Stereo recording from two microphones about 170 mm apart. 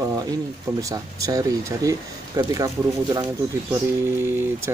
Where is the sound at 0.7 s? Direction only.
20° right (ahead or behind).